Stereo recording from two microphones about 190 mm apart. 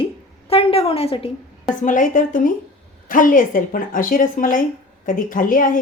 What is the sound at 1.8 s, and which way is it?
A woman's voice, 45° left (ahead or behind).